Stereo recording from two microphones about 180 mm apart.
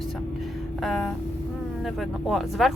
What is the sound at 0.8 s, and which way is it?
A woman's voice, centre (ahead or behind).